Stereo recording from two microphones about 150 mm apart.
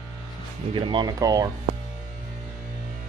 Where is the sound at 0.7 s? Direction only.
35° right (ahead or behind).